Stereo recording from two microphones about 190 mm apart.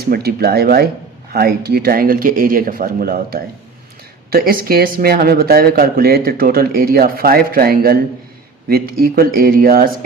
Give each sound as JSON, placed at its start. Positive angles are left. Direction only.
{"t": 0.0, "sound": "speech", "side_deg": -55}